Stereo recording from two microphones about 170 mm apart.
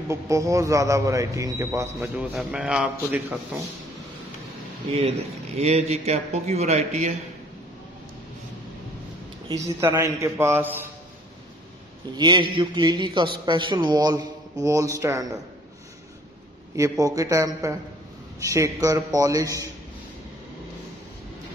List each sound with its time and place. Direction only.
0.1 s a man's voice: 20° right (ahead or behind)
2.0 s a man's voice: 5° right (ahead or behind)
5.6 s a man's voice: 40° right (ahead or behind)
9.5 s a man's voice: 20° right (ahead or behind)
12.2 s a man's voice: 25° right (ahead or behind)
17.0 s a man's voice: 20° right (ahead or behind)